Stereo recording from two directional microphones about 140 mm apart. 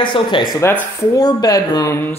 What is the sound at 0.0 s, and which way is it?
Speech, 35° left (ahead or behind).